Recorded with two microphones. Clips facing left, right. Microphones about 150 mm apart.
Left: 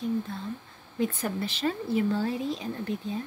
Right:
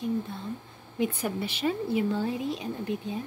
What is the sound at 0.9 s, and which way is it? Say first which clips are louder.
Speech: even; 10° right (ahead or behind).